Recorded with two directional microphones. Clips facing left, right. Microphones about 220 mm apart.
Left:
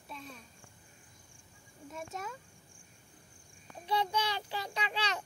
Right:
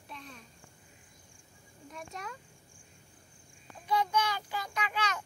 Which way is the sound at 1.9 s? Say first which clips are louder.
Left 2 dB; 5° left (ahead or behind).